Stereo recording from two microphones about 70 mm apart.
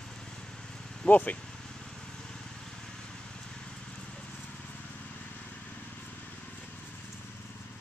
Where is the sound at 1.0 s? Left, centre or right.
Left.